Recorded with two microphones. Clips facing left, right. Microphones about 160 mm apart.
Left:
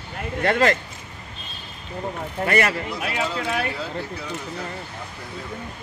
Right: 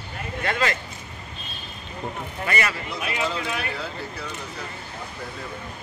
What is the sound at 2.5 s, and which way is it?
Speech, 55° left (ahead or behind).